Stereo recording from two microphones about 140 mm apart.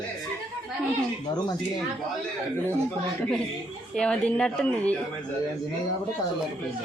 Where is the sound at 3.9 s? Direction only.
5° left (ahead or behind).